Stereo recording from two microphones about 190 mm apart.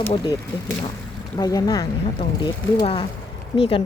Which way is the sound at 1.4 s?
20° left (ahead or behind).